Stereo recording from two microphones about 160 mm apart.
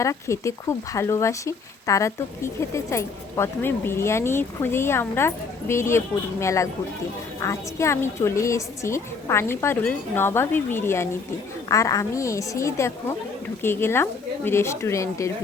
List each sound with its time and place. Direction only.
0.0 s a woman's voice: 20° left (ahead or behind)